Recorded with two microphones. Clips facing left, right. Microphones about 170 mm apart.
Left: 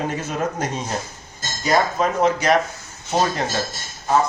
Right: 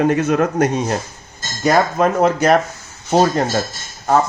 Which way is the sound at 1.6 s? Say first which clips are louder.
Right 4 dB; 55° right (ahead or behind).